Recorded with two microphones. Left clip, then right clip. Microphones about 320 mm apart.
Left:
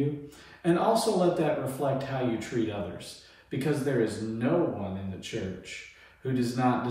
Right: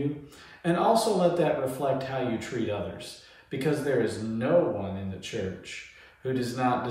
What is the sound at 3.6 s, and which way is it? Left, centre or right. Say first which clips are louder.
A man's voice: right 2 dB; centre.